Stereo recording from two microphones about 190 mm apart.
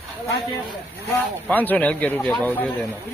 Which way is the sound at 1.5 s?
10° left (ahead or behind).